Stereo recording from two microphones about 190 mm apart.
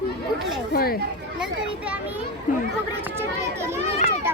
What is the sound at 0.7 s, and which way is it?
Speech, 50° left (ahead or behind).